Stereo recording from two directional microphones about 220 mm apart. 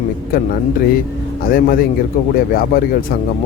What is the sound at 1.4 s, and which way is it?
Speech, 40° left (ahead or behind).